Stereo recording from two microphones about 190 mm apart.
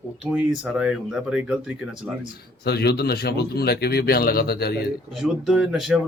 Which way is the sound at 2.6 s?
60° left (ahead or behind).